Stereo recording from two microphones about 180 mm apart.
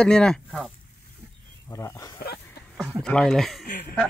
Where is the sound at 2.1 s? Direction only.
60° left (ahead or behind).